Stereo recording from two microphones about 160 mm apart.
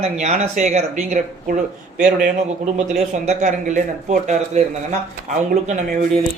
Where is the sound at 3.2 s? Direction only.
50° right (ahead or behind).